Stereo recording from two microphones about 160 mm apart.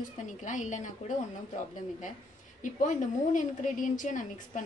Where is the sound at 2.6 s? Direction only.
55° left (ahead or behind).